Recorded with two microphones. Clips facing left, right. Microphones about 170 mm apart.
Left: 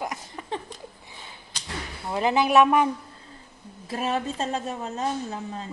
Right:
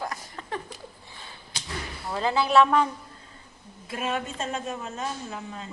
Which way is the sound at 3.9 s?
35° left (ahead or behind).